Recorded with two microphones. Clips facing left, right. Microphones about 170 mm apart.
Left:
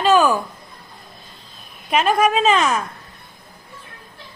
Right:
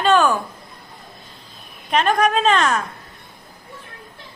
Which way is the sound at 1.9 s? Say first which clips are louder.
Left 1 dB; 5° left (ahead or behind).